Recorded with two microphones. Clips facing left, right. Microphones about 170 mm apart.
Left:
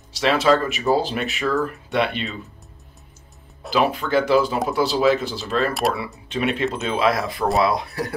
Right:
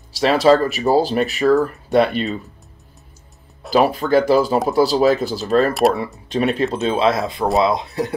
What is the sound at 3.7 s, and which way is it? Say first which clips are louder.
Speech: right 5 dB; 40° right (ahead or behind).